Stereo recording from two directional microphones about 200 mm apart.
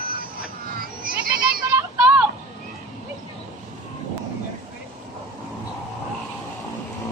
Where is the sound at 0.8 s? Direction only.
45° right (ahead or behind).